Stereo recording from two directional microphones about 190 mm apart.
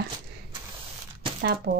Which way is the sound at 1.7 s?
55° right (ahead or behind).